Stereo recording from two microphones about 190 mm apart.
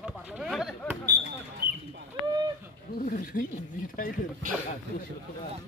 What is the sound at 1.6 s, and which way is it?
Chicken, 55° right (ahead or behind).